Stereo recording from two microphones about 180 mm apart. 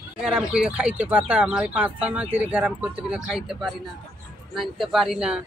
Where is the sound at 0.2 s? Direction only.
5° right (ahead or behind).